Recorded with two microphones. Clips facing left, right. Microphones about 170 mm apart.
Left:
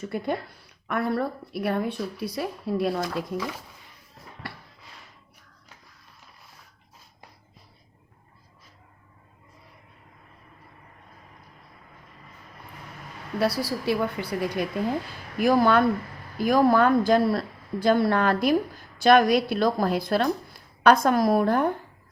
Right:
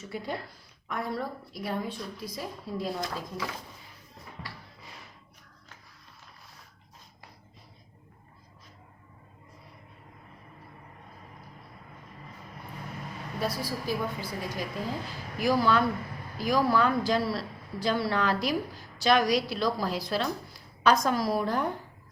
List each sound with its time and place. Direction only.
0.0 s a woman's voice: 55° left (ahead or behind)
4.4 s a sound: 60° left (ahead or behind)
13.4 s a woman's voice: 70° left (ahead or behind); by 21.7 s 55° left (ahead or behind)